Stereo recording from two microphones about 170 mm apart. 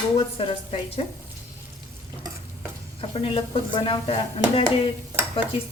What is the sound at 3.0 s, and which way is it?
Speech, 35° left (ahead or behind).